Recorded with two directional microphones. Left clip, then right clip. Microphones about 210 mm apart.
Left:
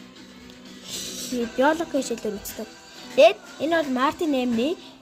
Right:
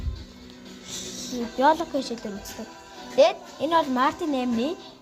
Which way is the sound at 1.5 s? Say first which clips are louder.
Right 1 dB; 15° left (ahead or behind).